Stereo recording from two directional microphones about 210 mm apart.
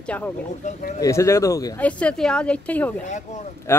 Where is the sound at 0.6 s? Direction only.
35° left (ahead or behind).